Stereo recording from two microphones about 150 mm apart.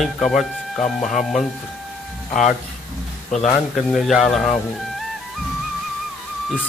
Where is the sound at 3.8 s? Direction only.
Centre (ahead or behind).